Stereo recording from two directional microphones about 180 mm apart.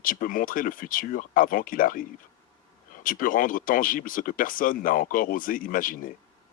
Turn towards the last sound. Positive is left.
turn(degrees=50)  # may be behind; listen again after turning